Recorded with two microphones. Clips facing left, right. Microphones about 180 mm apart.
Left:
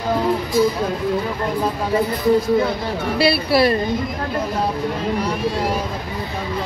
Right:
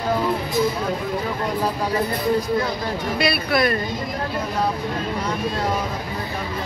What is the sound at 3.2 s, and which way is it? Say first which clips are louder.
Speech: left 5 dB; 30° left (ahead or behind).